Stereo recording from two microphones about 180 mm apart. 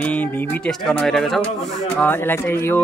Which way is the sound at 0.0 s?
10° left (ahead or behind).